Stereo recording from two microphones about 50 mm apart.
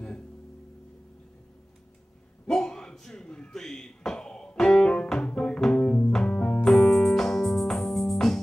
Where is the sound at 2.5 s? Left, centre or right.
Centre.